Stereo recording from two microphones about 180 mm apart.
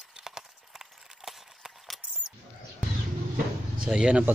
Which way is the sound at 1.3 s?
Centre (ahead or behind).